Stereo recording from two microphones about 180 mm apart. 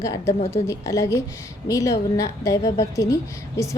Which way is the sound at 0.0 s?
15° left (ahead or behind).